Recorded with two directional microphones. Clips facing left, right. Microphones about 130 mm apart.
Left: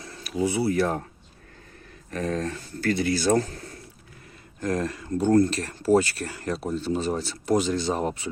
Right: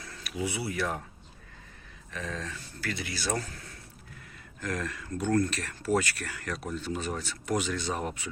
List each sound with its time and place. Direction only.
0.0 s speech: 30° left (ahead or behind)
2.0 s speech: 50° left (ahead or behind); by 8.3 s 30° left (ahead or behind)